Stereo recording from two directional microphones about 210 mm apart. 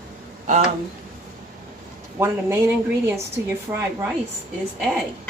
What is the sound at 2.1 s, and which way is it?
A woman's voice, 10° right (ahead or behind).